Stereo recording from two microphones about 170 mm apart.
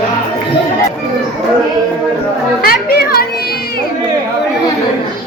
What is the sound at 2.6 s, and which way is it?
Music, 60° left (ahead or behind).